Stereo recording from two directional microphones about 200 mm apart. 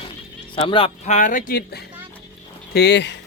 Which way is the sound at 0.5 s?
25° left (ahead or behind).